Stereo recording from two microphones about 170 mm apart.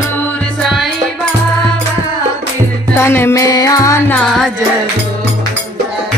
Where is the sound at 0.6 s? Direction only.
Centre (ahead or behind).